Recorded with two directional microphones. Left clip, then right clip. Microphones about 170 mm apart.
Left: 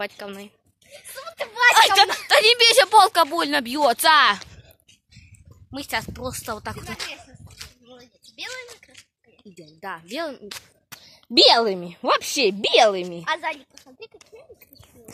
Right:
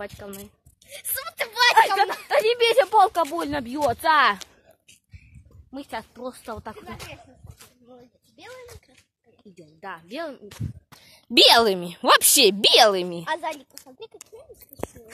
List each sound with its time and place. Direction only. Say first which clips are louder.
0.0 s speech: left 5 dB; 5° left (ahead or behind)
1.5 s a sound: left 2 dB; 15° left (ahead or behind)
2.2 s a woman's voice: left 3 dB; centre (ahead or behind)
5.7 s speech: left 6 dB; 20° left (ahead or behind)
6.7 s speech: left 4 dB; 40° left (ahead or behind)
9.6 s a woman's voice: left 3 dB; 50° left (ahead or behind)
11.1 s a woman's voice: even; 5° right (ahead or behind); by 14.1 s 20° right (ahead or behind)
14.3 s a sound: left 1 dB; 15° right (ahead or behind)